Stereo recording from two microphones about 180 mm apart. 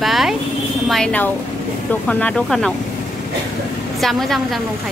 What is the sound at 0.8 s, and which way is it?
A woman's voice, 5° left (ahead or behind).